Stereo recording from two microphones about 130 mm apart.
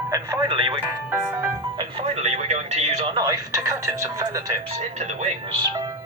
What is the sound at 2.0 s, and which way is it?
Speech, 55° right (ahead or behind).